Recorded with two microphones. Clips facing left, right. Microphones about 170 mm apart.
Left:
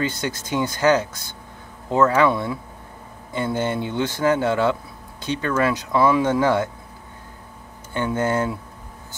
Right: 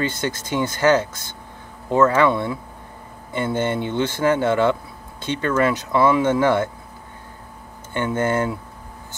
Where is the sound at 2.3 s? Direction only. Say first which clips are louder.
Right 1 dB; 20° right (ahead or behind).